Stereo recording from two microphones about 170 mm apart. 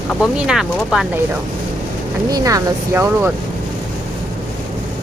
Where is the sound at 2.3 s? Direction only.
20° right (ahead or behind).